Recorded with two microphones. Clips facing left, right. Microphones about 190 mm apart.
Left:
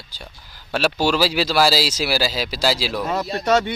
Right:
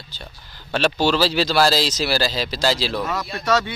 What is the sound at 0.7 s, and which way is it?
Speech, 5° left (ahead or behind).